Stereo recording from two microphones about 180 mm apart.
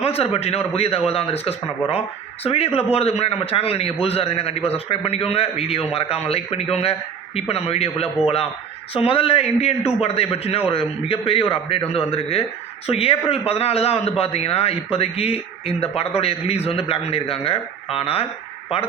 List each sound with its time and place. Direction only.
0.0 s a man's voice: 35° left (ahead or behind)